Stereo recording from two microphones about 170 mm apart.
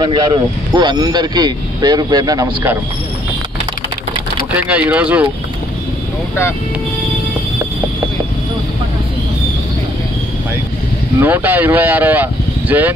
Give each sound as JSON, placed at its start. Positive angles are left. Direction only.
{"t": 0.0, "sound": "speech", "side_deg": -25}
{"t": 4.6, "sound": "speech", "side_deg": -5}
{"t": 11.1, "sound": "speech", "side_deg": -10}